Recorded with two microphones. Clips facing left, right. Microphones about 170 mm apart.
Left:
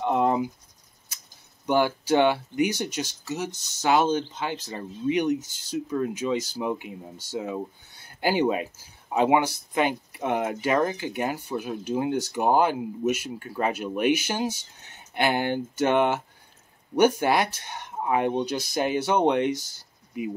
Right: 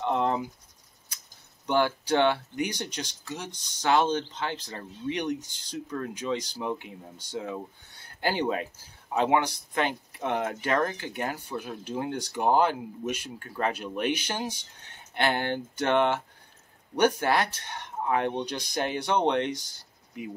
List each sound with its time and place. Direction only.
0.0 s cricket: 10° left (ahead or behind)
1.7 s speech: 10° left (ahead or behind)